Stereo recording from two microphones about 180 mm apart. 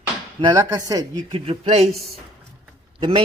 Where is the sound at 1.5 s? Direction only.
35° right (ahead or behind).